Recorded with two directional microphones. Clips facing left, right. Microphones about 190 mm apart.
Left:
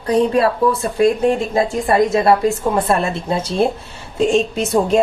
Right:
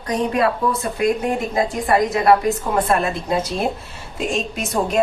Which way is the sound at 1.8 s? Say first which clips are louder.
Left 2 dB; 25° left (ahead or behind).